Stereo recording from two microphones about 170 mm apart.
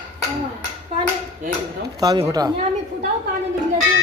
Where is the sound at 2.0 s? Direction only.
25° right (ahead or behind).